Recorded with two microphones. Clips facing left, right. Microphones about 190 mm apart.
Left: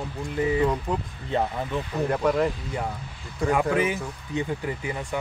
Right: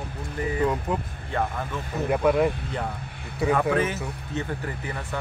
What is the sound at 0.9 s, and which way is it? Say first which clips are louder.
Speech: even; 5° right (ahead or behind).